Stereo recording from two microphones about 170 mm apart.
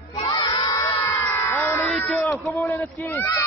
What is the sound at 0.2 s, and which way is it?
Crowd, 25° left (ahead or behind).